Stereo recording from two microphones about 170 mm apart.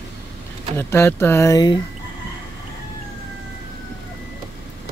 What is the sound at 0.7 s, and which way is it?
Speech, 15° left (ahead or behind).